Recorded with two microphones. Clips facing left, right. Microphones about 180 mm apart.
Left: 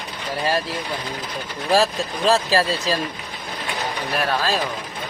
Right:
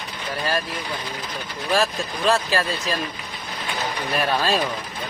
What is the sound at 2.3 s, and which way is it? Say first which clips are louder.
Speech: left 3 dB; 35° left (ahead or behind).